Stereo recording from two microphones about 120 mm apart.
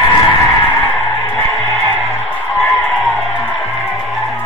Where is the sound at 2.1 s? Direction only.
15° left (ahead or behind).